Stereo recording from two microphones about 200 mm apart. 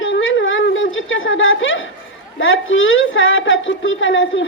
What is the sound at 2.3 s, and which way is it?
A woman's voice, 75° left (ahead or behind).